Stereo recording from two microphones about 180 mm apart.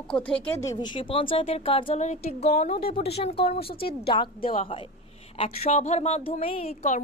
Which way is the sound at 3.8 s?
30° left (ahead or behind).